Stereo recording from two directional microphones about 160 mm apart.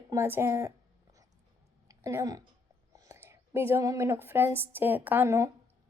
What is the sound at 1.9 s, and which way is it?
A woman's voice, 20° right (ahead or behind).